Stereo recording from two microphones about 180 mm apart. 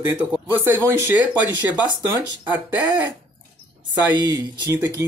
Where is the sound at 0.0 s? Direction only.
10° right (ahead or behind).